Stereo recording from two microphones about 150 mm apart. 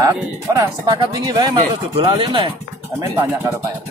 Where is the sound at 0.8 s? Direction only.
25° right (ahead or behind).